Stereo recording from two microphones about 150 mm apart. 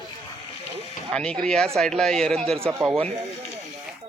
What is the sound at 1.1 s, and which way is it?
A man's voice, 5° left (ahead or behind).